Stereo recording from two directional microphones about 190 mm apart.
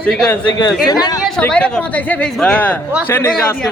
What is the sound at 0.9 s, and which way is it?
Speech, 20° left (ahead or behind).